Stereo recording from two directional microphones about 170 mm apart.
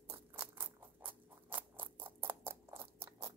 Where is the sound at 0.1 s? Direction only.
10° right (ahead or behind).